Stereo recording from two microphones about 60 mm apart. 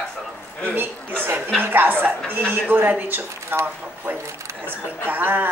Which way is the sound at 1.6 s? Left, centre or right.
Right.